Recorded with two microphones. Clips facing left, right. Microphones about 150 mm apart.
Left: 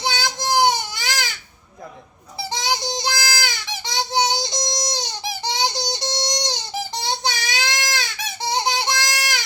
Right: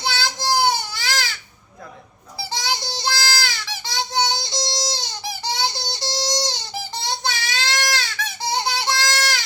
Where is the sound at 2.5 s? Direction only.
20° left (ahead or behind).